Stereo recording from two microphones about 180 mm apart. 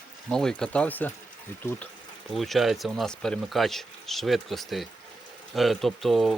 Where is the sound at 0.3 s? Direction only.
5° left (ahead or behind).